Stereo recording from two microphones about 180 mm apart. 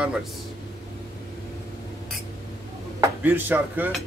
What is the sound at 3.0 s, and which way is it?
Speech, 10° right (ahead or behind).